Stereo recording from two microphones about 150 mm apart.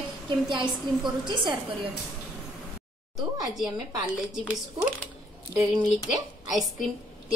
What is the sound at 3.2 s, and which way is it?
Speech, centre (ahead or behind).